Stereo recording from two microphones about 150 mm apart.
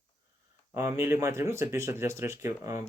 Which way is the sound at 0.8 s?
15° right (ahead or behind).